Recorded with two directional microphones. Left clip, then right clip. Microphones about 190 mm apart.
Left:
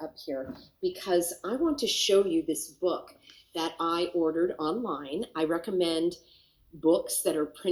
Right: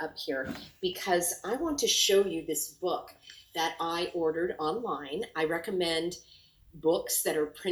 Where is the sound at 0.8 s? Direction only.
60° left (ahead or behind).